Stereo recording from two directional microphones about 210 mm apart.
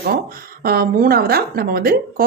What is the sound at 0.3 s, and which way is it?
A woman's voice, 45° right (ahead or behind).